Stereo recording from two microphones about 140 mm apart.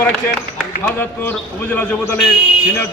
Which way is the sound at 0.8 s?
15° left (ahead or behind).